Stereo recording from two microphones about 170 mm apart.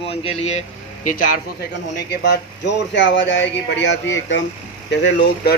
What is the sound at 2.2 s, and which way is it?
Speech, 90° left.